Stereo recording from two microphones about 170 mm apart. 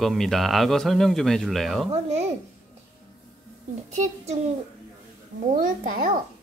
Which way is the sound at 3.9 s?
45° right (ahead or behind).